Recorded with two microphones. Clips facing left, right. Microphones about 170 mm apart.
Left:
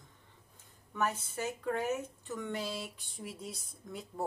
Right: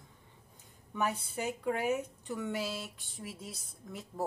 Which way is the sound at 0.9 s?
15° right (ahead or behind).